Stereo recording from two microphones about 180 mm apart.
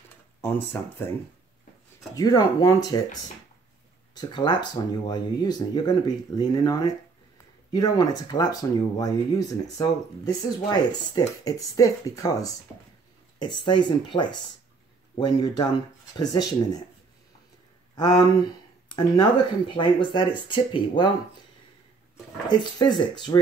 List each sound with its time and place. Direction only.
0.4 s speech: 10° left (ahead or behind)
2.1 s speech: 20° left (ahead or behind)
4.1 s speech: 25° left (ahead or behind)
17.9 s speech: 25° left (ahead or behind)
22.5 s speech: 25° left (ahead or behind)